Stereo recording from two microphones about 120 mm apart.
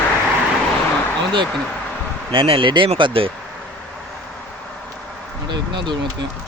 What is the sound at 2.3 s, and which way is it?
Speech, 45° right (ahead or behind).